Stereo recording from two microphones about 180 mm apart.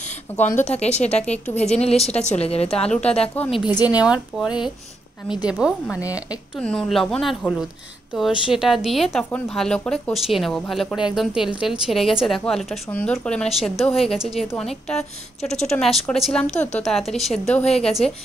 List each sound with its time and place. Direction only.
0.4 s a woman's voice: 40° left (ahead or behind)
3.3 s speech: centre (ahead or behind)
3.6 s a woman's voice: 20° left (ahead or behind)
4.0 s speech: 5° right (ahead or behind)